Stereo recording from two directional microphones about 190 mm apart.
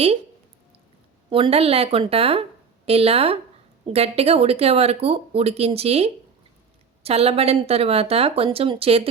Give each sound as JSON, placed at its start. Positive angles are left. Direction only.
{"t": 1.3, "sound": "speech", "side_deg": -30}